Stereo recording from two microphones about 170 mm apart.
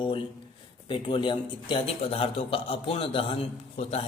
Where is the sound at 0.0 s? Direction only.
30° left (ahead or behind).